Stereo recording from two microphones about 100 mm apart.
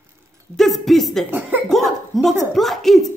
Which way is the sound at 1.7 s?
Centre (ahead or behind).